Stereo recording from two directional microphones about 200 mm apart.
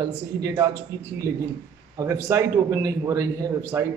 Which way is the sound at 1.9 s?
15° right (ahead or behind).